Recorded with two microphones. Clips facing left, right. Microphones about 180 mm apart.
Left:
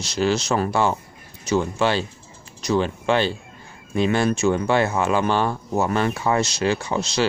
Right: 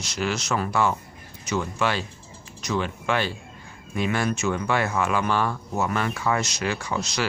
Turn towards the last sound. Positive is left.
turn(degrees=30)  # may be behind; listen again after turning